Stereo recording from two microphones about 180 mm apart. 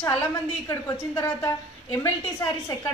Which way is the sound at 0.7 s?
15° left (ahead or behind).